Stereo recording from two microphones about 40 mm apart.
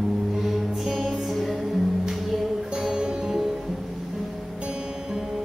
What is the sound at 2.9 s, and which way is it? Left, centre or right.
Music, centre.